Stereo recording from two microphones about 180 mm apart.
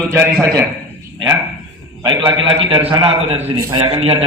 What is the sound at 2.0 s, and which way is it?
A man's voice, 25° right (ahead or behind).